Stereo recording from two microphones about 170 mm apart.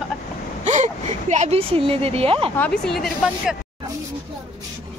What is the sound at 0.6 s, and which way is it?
A woman's voice, 45° right (ahead or behind).